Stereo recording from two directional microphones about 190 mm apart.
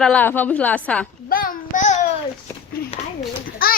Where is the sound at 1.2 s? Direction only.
50° left (ahead or behind).